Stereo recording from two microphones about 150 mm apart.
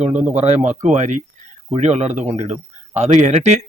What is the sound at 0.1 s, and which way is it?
Speech, 10° right (ahead or behind).